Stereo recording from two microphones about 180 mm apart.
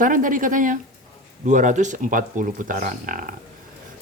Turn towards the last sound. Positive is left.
turn(degrees=-50)  # may be behind; listen again after turning